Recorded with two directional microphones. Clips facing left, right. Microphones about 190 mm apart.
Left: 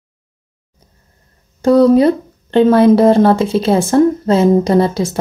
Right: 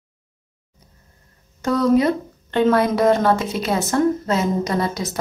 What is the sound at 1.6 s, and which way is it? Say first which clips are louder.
Speech: left 8 dB; 30° left (ahead or behind).